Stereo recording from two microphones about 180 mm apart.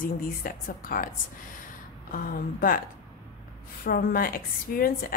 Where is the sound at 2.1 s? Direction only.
50° left (ahead or behind).